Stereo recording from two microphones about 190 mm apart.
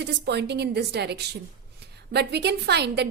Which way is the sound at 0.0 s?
60° right (ahead or behind).